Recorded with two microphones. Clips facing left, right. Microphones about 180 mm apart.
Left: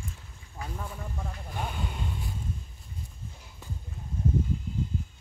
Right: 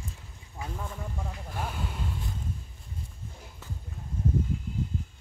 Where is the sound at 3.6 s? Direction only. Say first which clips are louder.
Left 1 dB; 15° left (ahead or behind).